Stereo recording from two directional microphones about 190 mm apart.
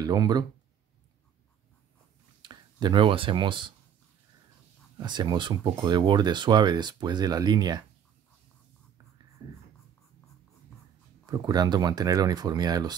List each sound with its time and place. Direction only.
0.0 s speech: 20° right (ahead or behind)
2.4 s speech: 25° right (ahead or behind)
5.0 s speech: 25° right (ahead or behind)
11.2 s speech: 20° right (ahead or behind)